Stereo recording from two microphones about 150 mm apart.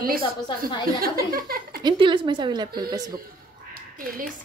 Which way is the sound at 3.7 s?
70° right (ahead or behind).